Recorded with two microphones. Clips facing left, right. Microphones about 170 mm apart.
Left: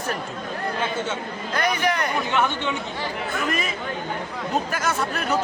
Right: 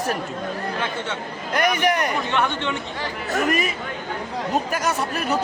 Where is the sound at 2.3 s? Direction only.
10° left (ahead or behind).